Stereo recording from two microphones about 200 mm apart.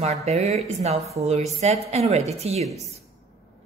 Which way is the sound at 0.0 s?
35° right (ahead or behind).